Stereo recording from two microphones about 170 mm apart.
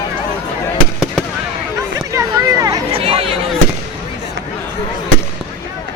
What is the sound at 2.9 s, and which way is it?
Chatter, 35° right (ahead or behind).